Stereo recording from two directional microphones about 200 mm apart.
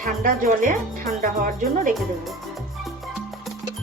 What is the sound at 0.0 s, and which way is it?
Speech, 40° right (ahead or behind).